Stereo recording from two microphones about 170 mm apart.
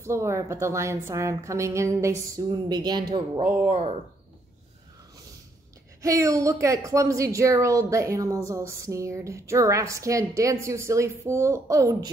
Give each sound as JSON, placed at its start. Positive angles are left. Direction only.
{"t": 0.0, "sound": "speech", "side_deg": -15}
{"t": 6.0, "sound": "speech", "side_deg": -20}